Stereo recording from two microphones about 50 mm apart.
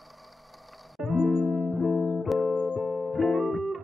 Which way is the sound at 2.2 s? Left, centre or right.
Centre.